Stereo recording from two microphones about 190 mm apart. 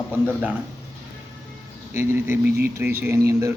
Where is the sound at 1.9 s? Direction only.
15° right (ahead or behind).